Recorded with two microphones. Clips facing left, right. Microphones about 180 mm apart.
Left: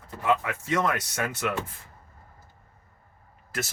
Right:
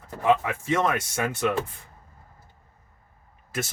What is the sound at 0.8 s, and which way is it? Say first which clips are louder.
Speech: right 2 dB; 10° right (ahead or behind).